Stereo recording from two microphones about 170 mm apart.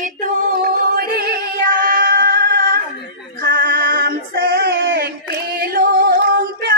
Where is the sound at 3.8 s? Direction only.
55° right (ahead or behind); by 5.1 s 90° right.